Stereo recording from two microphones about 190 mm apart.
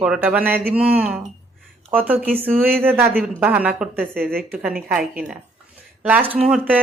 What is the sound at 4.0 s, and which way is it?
Speech, 55° right (ahead or behind).